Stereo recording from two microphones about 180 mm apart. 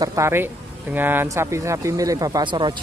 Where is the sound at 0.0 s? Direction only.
15° right (ahead or behind).